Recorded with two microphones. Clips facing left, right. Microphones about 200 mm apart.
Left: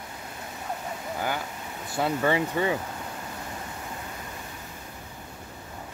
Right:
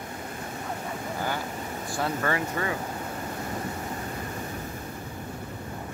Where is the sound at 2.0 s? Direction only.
15° left (ahead or behind).